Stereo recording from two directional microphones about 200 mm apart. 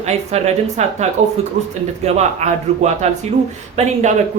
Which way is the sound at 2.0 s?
35° right (ahead or behind).